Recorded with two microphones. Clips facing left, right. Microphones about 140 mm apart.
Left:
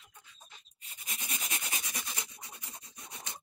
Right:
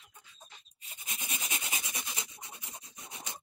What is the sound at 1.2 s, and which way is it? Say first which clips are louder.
Rub: right 1 dB; 20° right (ahead or behind).